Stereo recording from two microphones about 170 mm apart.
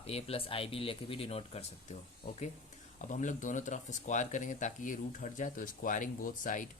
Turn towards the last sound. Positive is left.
turn(degrees=50)  # may be behind; listen again after turning